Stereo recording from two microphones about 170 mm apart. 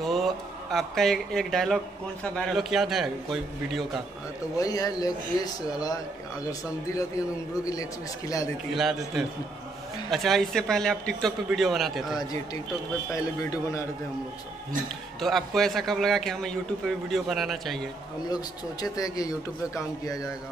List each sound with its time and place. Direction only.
0.0 s speech: centre (ahead or behind)
4.6 s speech: 20° left (ahead or behind)
8.7 s speech: centre (ahead or behind)
13.1 s speech: 20° left (ahead or behind)
15.1 s speech: centre (ahead or behind)
18.3 s speech: 20° left (ahead or behind)